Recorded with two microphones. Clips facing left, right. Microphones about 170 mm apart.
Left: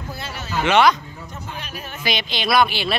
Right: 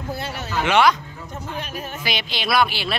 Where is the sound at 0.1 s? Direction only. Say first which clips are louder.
Right 5 dB; 55° right (ahead or behind).